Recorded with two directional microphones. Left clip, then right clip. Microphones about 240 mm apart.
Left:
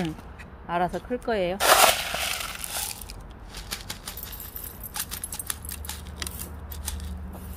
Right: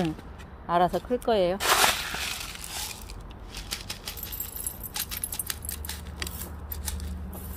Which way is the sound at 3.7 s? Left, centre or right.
Centre.